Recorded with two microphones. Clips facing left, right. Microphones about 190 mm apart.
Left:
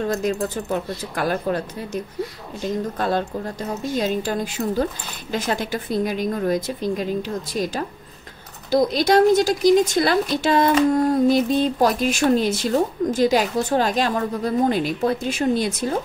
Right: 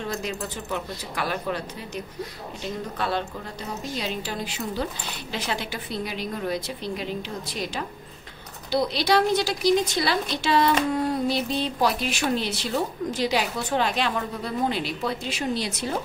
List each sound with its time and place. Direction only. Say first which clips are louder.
0.0 s a woman's voice: left 8 dB; 45° left (ahead or behind)
3.0 s a woman's voice: left 3 dB; 45° left (ahead or behind)